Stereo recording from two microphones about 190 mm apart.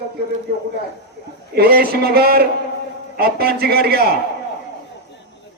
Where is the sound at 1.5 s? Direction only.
55° right (ahead or behind).